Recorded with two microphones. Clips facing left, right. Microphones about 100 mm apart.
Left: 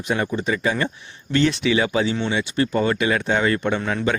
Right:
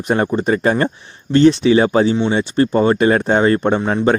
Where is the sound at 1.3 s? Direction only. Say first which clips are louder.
Right 8 dB; 35° right (ahead or behind).